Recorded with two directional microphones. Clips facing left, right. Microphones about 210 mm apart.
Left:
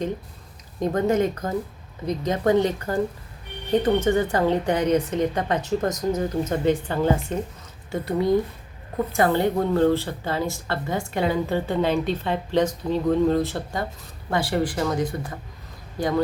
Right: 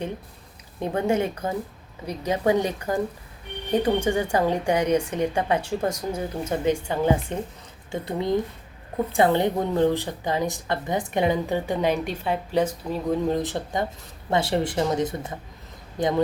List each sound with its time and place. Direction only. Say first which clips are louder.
0.9 s speech: left 2 dB; 10° right (ahead or behind)